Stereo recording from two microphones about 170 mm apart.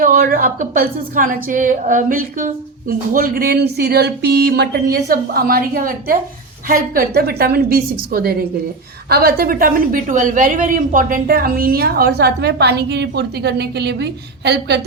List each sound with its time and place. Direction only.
0.0 s a woman's voice: 55° right (ahead or behind); by 14.8 s 80° right